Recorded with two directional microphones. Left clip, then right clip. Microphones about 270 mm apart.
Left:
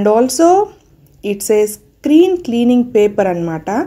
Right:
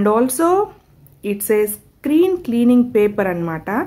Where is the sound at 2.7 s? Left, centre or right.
Centre.